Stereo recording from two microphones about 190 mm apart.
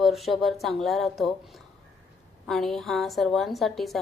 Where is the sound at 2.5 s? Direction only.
Centre (ahead or behind).